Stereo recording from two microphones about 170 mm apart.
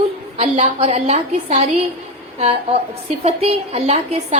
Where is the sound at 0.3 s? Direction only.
40° right (ahead or behind).